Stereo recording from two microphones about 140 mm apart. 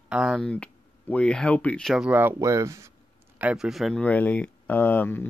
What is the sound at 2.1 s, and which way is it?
Speech, 15° right (ahead or behind).